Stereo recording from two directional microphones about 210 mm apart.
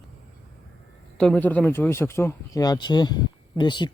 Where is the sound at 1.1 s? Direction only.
5° left (ahead or behind).